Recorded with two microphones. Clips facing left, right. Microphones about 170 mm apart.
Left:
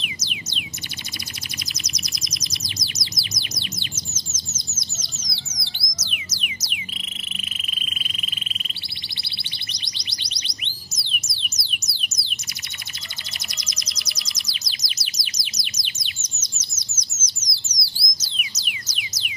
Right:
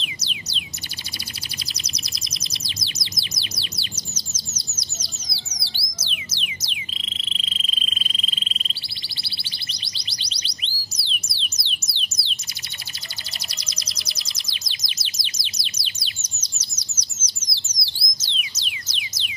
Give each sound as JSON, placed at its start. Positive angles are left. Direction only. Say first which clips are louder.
{"t": 0.0, "sound": "a sound", "louder": "left 1 dB", "side_deg": -30}
{"t": 1.7, "sound": "bird", "louder": "left 2 dB", "side_deg": -30}
{"t": 4.6, "sound": "music", "louder": "left 1 dB", "side_deg": -35}
{"t": 13.6, "sound": "music", "louder": "even", "side_deg": -30}
{"t": 14.9, "sound": "bird", "louder": "even", "side_deg": -25}